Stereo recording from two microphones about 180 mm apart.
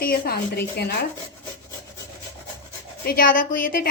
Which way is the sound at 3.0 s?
50° left (ahead or behind).